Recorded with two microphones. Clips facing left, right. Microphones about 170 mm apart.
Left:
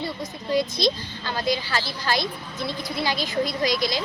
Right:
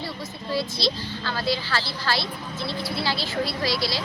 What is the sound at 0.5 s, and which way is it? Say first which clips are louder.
A woman's voice: left 4 dB; 20° left (ahead or behind).